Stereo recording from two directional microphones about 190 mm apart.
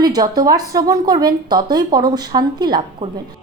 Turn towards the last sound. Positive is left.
turn(degrees=-20)  # may be behind; listen again after turning